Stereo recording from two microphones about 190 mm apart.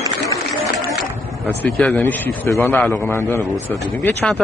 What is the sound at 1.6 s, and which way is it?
A man's voice, 10° left (ahead or behind).